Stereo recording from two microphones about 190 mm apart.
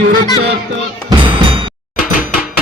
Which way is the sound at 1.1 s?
25° right (ahead or behind).